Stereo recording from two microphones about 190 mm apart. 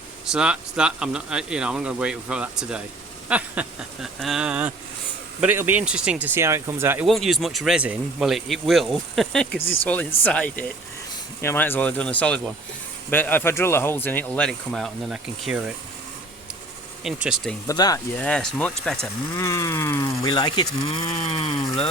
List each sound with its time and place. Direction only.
0.3 s speech: 5° right (ahead or behind)
7.1 s speech: centre (ahead or behind)
17.0 s speech: centre (ahead or behind)
17.7 s speech: 20° left (ahead or behind)
18.2 s speech: 5° left (ahead or behind)
19.0 s speech: 15° left (ahead or behind); by 21.5 s 30° left (ahead or behind)